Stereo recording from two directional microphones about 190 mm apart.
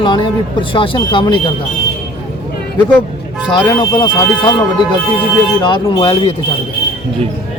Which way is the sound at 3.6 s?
20° left (ahead or behind).